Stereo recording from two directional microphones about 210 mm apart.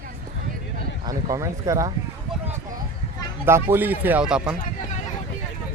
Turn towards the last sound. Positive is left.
turn(degrees=-5)  # may be behind; listen again after turning